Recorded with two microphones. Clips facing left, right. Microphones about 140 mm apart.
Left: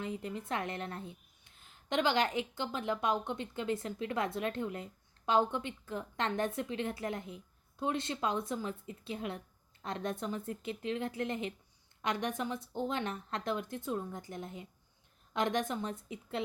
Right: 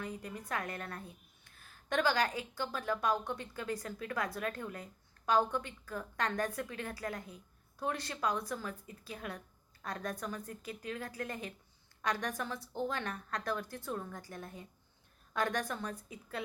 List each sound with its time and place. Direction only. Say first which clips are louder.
0.0 s a woman's voice: left 4 dB; 25° left (ahead or behind)